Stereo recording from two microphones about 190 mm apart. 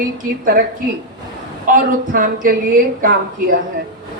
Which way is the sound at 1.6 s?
45° right (ahead or behind).